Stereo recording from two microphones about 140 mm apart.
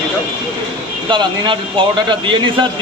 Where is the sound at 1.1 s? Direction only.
35° right (ahead or behind).